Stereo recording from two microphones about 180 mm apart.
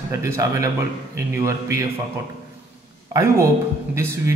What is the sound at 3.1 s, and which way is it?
Speech, 15° right (ahead or behind).